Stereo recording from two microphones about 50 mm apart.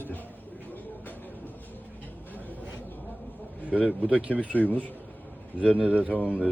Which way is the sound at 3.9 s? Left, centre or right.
Right.